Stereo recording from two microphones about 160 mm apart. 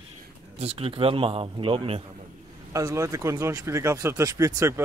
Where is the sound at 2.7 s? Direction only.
20° right (ahead or behind).